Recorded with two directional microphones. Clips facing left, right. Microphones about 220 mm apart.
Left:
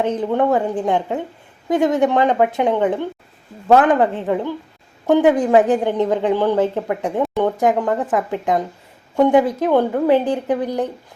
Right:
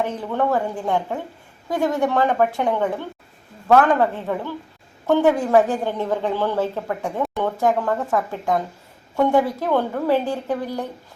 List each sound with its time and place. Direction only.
0.0 s a woman's voice: 20° left (ahead or behind)